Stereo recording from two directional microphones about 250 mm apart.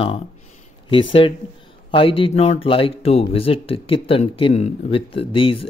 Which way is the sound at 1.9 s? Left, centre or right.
Left.